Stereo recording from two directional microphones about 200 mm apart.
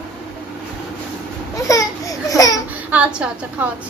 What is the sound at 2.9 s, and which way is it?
Speech, 5° right (ahead or behind).